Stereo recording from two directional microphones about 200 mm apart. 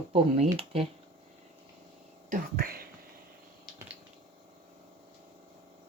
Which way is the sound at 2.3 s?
45° right (ahead or behind).